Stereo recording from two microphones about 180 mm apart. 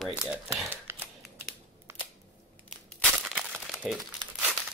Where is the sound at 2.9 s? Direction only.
Centre (ahead or behind).